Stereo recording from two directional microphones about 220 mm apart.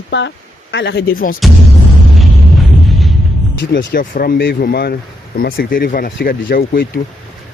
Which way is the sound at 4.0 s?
40° left (ahead or behind).